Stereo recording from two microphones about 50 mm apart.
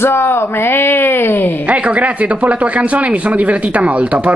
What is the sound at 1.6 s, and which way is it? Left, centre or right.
Speech, right.